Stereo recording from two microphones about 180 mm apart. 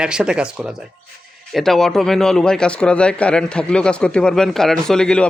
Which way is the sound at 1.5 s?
Centre (ahead or behind).